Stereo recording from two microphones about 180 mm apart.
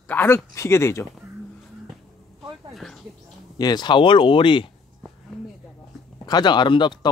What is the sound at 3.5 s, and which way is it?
Speech, 20° left (ahead or behind).